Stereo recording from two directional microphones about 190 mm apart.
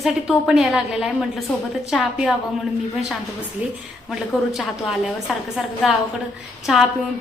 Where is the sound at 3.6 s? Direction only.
10° right (ahead or behind).